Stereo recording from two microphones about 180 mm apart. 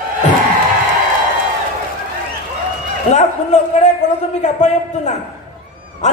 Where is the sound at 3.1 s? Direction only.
40° left (ahead or behind).